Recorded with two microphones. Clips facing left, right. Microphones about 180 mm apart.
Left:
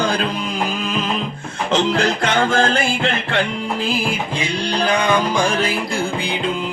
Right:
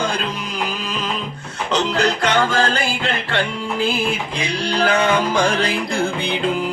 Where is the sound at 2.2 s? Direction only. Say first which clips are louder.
Left 1 dB; 50° left (ahead or behind).